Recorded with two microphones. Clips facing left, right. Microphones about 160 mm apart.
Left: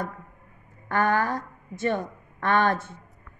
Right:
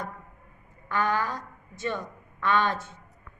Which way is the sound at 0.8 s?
55° left (ahead or behind).